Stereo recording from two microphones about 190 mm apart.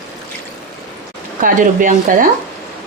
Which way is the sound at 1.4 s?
45° right (ahead or behind).